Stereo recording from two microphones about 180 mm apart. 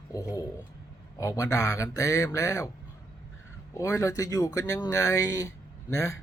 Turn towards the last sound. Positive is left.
turn(degrees=15)  # may be behind; listen again after turning